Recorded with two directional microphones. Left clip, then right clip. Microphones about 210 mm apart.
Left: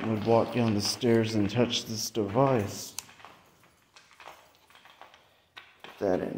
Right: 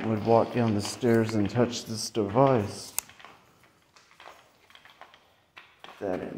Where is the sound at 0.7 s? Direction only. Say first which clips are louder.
Left 2 dB; 15° left (ahead or behind).